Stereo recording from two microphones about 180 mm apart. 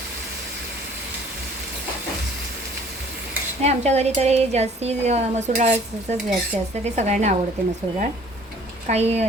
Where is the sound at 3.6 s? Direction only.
35° right (ahead or behind).